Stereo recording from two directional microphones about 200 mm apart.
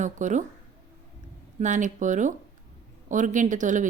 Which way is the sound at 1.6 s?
40° right (ahead or behind).